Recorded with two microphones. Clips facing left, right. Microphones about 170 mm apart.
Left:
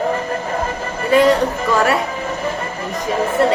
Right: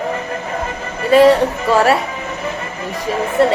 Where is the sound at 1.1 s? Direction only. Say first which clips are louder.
Right 3 dB; 30° right (ahead or behind).